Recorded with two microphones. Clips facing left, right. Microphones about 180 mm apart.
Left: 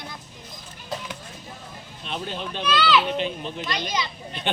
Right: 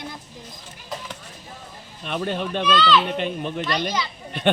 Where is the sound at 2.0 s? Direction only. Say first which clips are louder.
Right 6 dB; 60° right (ahead or behind).